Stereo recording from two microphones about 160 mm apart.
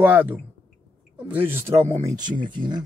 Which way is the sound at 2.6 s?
30° right (ahead or behind).